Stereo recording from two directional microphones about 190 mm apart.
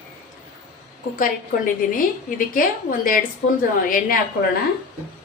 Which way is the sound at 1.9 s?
45° left (ahead or behind).